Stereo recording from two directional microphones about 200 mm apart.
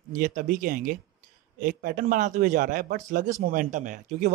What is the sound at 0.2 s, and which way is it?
Speech, 40° right (ahead or behind).